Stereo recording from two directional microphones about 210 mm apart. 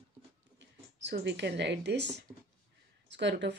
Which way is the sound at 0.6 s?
55° right (ahead or behind).